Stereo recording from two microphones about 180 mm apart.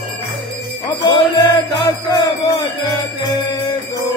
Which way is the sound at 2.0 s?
20° left (ahead or behind).